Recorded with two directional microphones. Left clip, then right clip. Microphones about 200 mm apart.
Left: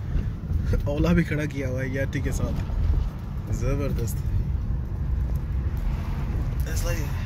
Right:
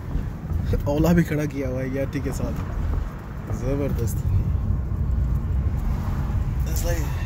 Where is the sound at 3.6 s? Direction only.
5° right (ahead or behind).